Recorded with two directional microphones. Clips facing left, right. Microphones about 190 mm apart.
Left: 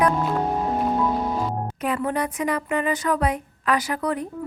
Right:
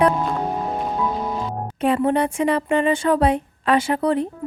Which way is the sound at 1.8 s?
30° right (ahead or behind).